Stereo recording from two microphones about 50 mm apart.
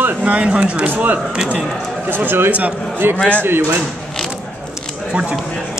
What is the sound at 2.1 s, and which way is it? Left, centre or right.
A man's voice, right.